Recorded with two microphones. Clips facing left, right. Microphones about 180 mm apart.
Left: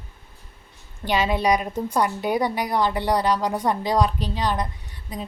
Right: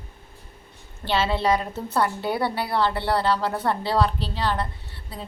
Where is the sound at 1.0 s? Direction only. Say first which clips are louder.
Left 1 dB; 15° left (ahead or behind).